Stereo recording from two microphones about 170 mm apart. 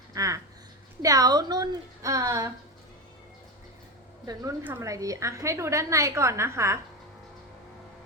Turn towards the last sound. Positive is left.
turn(degrees=-15)  # may be behind; listen again after turning